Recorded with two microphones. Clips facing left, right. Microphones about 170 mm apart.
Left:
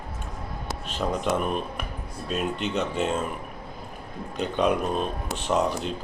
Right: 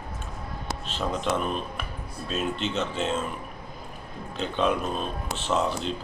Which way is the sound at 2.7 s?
10° left (ahead or behind).